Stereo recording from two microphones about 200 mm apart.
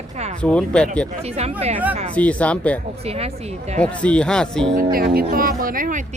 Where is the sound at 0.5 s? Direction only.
5° left (ahead or behind).